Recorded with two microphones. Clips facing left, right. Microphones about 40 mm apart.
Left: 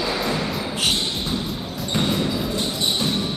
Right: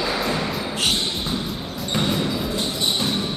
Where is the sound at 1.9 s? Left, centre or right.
Centre.